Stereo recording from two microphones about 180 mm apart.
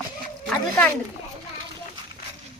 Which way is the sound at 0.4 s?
5° left (ahead or behind).